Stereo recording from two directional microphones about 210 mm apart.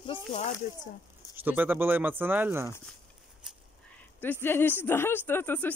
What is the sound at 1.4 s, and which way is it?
Speech, 10° right (ahead or behind).